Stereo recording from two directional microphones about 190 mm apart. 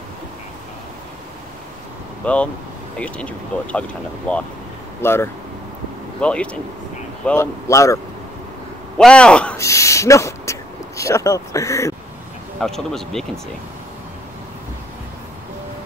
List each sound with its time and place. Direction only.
2.2 s speech: 5° left (ahead or behind)
8.9 s speech: 5° left (ahead or behind)
12.5 s speech: centre (ahead or behind)